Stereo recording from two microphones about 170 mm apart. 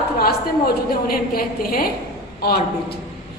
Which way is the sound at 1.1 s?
60° left (ahead or behind).